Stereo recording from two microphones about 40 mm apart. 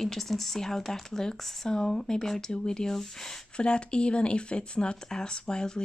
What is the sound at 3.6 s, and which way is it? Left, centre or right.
Speech, left.